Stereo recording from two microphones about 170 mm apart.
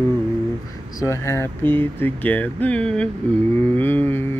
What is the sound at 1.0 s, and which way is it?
Speech, 15° left (ahead or behind).